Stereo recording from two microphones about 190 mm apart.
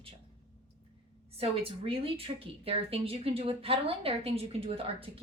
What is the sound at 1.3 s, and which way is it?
Speech, 30° right (ahead or behind).